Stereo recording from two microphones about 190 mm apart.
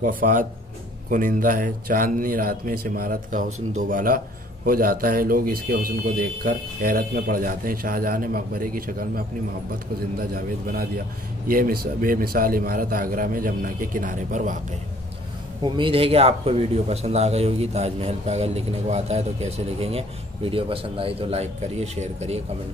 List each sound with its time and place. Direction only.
0.0 s a man's voice: 45° right (ahead or behind)
15.6 s a man's voice: 25° right (ahead or behind)